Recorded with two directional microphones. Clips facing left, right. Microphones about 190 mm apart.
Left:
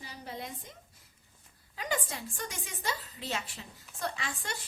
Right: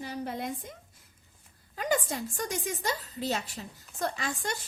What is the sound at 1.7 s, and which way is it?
A woman's voice, 45° right (ahead or behind).